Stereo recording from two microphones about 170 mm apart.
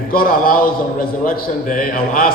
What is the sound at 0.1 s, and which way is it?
A man's voice, 60° left (ahead or behind).